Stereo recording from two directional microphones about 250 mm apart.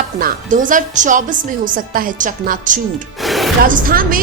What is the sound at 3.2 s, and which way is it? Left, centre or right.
Music, centre.